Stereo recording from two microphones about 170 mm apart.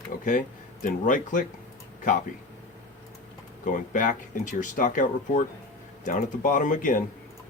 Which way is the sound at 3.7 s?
50° left (ahead or behind).